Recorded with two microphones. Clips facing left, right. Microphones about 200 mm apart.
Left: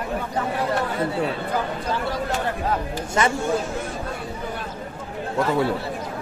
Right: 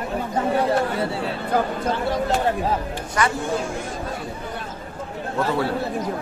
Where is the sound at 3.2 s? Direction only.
25° left (ahead or behind).